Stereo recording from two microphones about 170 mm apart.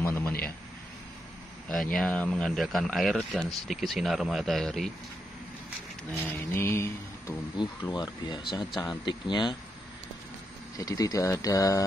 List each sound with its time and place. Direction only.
0.0 s a sound: 10° left (ahead or behind)
1.7 s speech: 5° left (ahead or behind)
6.1 s speech: 15° left (ahead or behind)
10.8 s speech: 20° left (ahead or behind)